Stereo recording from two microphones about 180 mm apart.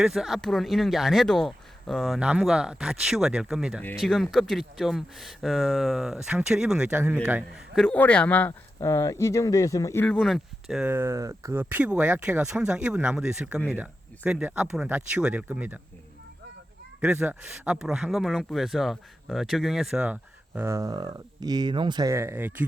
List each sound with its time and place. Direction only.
0.0 s speech: centre (ahead or behind)
7.9 s speech: 5° left (ahead or behind); by 15.8 s 10° right (ahead or behind)
17.0 s speech: 5° right (ahead or behind)
20.6 s speech: 15° right (ahead or behind)